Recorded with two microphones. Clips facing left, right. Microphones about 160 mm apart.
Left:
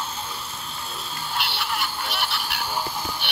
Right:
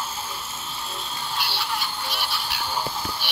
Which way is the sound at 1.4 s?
60° left (ahead or behind).